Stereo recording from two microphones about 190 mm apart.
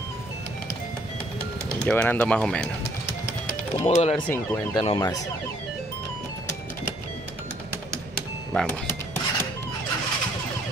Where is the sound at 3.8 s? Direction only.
35° left (ahead or behind).